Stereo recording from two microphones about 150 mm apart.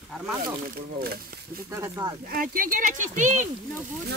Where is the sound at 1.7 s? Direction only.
20° right (ahead or behind).